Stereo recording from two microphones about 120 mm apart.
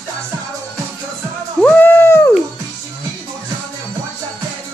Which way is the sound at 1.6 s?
15° left (ahead or behind).